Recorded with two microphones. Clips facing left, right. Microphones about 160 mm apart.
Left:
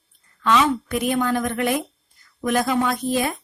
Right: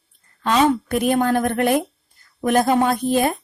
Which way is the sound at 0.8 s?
50° right (ahead or behind).